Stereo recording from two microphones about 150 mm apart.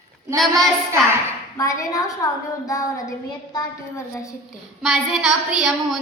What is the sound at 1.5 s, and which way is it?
A woman's voice, 20° left (ahead or behind).